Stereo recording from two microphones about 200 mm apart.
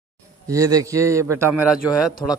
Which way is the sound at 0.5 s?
15° right (ahead or behind).